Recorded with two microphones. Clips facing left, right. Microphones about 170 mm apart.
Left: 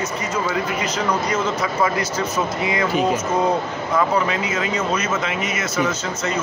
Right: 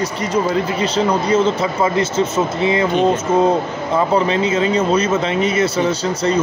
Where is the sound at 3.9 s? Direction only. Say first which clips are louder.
Right 4 dB; 30° right (ahead or behind).